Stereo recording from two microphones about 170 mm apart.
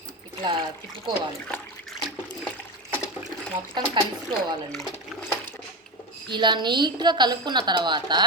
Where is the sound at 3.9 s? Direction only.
25° right (ahead or behind).